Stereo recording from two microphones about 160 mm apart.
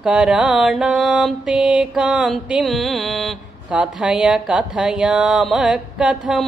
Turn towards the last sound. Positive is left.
turn(degrees=-5)  # may be behind; listen again after turning